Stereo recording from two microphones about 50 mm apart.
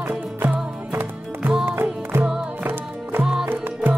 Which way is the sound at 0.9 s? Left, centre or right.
Right.